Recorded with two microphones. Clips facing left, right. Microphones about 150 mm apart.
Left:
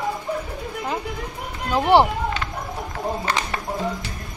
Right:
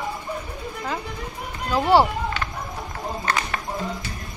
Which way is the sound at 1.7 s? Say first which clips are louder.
Left 1 dB; 20° left (ahead or behind).